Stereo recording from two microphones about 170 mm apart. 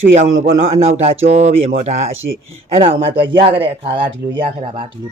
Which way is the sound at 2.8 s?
30° right (ahead or behind).